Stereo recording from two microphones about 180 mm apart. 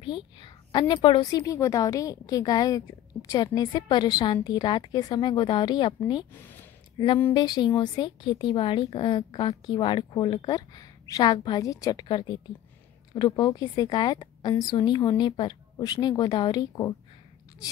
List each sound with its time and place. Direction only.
0.0 s a woman's voice: 25° left (ahead or behind)
7.3 s a woman's voice: 25° left (ahead or behind)